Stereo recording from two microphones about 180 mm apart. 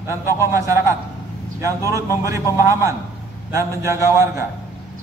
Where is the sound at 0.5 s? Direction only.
15° right (ahead or behind).